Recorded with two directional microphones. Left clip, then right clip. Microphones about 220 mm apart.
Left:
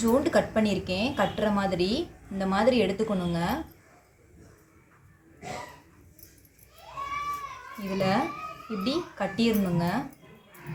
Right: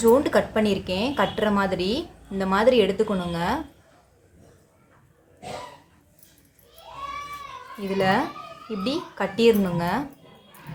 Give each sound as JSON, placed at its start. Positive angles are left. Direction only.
{"t": 0.0, "sound": "a woman's voice", "side_deg": -20}
{"t": 7.8, "sound": "a woman's voice", "side_deg": -20}